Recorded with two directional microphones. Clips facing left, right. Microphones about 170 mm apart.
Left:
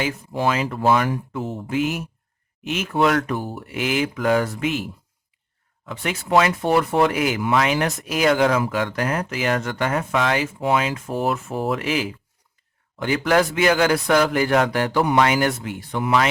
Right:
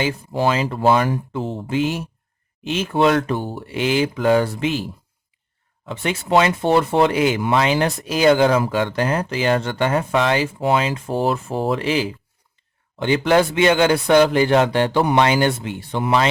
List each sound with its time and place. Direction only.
0.0 s speech: 30° right (ahead or behind)